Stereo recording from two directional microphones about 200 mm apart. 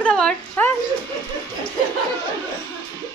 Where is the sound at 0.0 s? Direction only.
5° left (ahead or behind).